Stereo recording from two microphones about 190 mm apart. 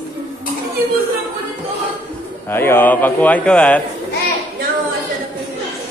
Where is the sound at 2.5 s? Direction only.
10° left (ahead or behind).